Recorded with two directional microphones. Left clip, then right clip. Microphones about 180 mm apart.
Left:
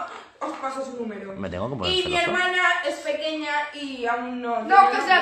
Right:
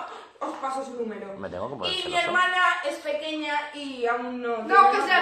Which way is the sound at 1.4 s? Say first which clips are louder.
Left 3 dB; 30° left (ahead or behind).